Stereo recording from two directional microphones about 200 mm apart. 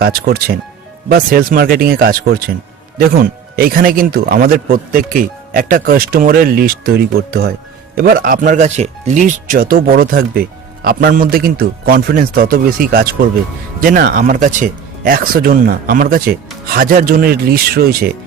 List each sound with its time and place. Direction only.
0.0 s speech: 50° right (ahead or behind)